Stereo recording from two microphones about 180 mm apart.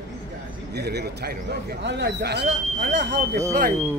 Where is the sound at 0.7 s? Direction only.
65° right (ahead or behind).